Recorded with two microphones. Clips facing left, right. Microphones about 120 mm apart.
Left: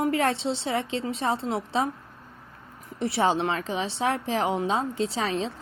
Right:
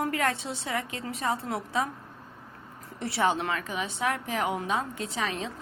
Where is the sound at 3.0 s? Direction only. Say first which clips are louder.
Left 3 dB; 25° left (ahead or behind).